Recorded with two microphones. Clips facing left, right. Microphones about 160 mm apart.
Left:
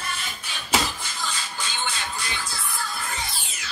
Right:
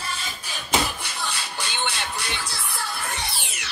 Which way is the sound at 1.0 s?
65° right (ahead or behind).